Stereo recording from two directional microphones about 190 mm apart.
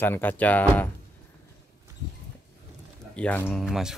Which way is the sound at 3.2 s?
10° left (ahead or behind).